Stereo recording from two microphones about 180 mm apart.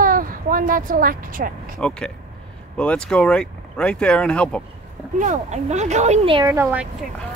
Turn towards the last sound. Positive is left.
turn(degrees=-10)  # may be behind; listen again after turning